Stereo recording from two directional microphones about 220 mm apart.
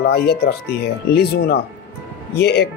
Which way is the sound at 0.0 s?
45° left (ahead or behind).